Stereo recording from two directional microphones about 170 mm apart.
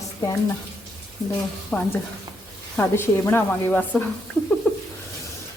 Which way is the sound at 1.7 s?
5° left (ahead or behind).